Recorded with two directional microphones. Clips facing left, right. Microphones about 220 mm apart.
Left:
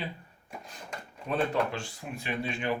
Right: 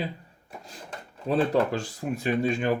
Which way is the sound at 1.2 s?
35° right (ahead or behind).